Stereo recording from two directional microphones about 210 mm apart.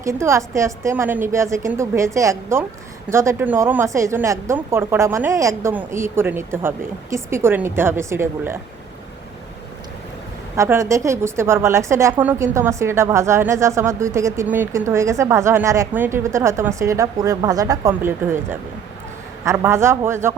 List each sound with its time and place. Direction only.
0.0 s a woman's voice: 15° right (ahead or behind)
10.5 s a woman's voice: 15° right (ahead or behind)